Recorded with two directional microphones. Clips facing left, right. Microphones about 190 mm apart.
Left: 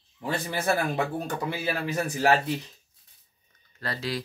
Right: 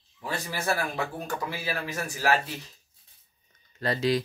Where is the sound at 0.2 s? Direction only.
20° left (ahead or behind).